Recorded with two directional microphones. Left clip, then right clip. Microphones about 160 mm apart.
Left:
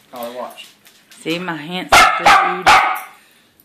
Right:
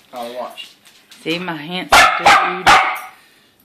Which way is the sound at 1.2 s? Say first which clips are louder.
Even; centre (ahead or behind).